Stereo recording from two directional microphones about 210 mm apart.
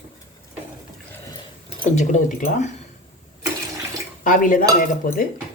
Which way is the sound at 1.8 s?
40° left (ahead or behind).